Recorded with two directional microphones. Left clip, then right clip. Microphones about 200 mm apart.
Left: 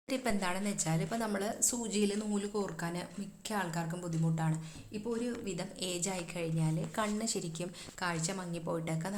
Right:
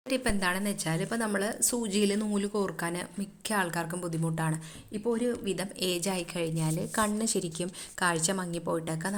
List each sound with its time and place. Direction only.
0.1 s a woman's voice: 20° right (ahead or behind)